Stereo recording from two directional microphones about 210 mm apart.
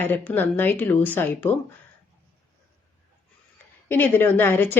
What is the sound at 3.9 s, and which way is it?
Speech, 10° left (ahead or behind).